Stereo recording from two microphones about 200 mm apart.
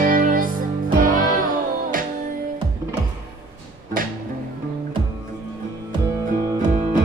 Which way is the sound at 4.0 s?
45° right (ahead or behind).